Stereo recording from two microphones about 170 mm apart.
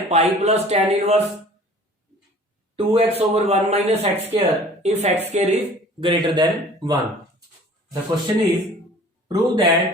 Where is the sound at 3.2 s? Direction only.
40° right (ahead or behind).